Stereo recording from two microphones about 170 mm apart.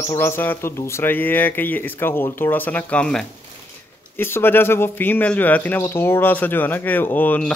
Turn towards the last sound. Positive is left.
turn(degrees=10)  # may be behind; listen again after turning